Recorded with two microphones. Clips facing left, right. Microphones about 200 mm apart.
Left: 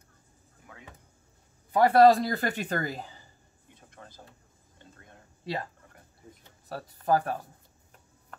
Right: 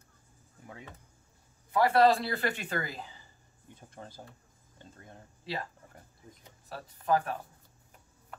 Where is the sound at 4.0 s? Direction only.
25° right (ahead or behind).